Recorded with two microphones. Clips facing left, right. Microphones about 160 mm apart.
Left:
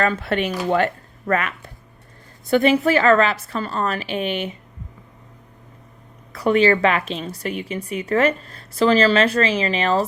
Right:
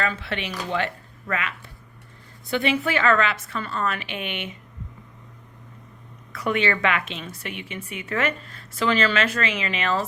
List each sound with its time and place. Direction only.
0.0 s a woman's voice: 45° left (ahead or behind)
6.3 s a woman's voice: 35° left (ahead or behind)